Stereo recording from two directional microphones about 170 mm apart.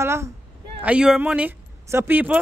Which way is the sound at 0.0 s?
15° right (ahead or behind).